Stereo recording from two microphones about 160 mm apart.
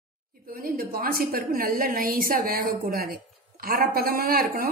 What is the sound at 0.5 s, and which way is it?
Speech, 65° right (ahead or behind).